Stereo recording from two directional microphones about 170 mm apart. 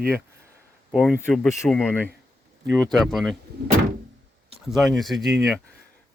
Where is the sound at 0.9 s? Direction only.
Centre (ahead or behind).